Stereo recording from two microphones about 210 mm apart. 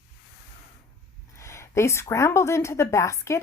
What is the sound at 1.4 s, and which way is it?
Speech, 15° left (ahead or behind).